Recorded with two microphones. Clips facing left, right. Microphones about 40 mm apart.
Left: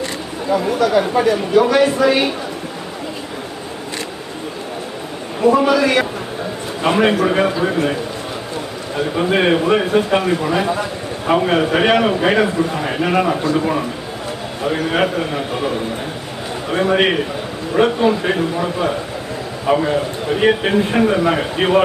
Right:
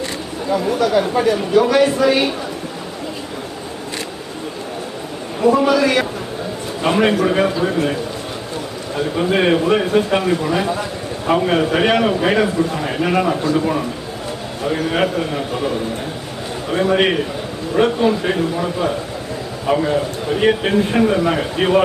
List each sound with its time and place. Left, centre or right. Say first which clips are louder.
0.7 s speech: even; centre
5.4 s a man's voice: left 1 dB; centre
9.0 s a man's voice: left 1 dB; left